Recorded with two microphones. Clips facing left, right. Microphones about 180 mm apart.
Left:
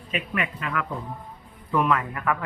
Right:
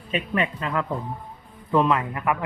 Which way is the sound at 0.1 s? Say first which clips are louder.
Right 4 dB; 30° right (ahead or behind).